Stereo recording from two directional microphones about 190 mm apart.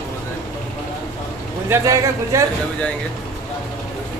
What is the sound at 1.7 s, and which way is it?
Speech, 15° right (ahead or behind).